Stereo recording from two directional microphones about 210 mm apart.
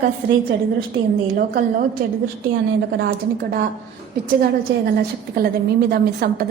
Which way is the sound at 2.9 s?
45° right (ahead or behind).